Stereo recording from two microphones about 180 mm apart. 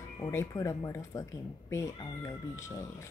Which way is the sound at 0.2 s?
15° left (ahead or behind).